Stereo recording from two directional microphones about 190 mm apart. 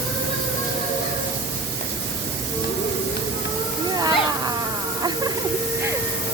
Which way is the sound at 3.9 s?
20° right (ahead or behind).